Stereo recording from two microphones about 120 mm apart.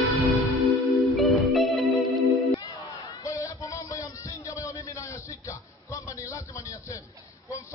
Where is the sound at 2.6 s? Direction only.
35° left (ahead or behind).